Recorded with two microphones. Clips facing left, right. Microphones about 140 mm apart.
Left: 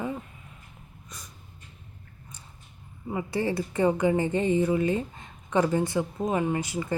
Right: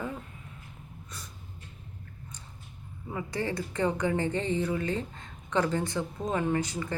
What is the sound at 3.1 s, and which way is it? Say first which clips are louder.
Speech: left 4 dB; 15° left (ahead or behind).